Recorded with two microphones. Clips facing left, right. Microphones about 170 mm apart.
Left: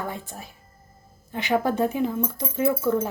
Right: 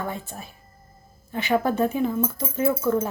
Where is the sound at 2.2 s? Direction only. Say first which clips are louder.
Right 2 dB; 5° right (ahead or behind).